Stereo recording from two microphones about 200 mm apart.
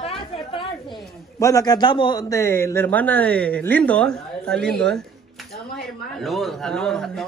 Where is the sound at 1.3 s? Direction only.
15° left (ahead or behind).